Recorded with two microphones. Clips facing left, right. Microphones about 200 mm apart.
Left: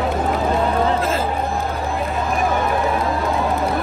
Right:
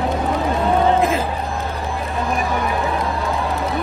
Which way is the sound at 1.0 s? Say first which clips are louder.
Right 3 dB; 15° right (ahead or behind).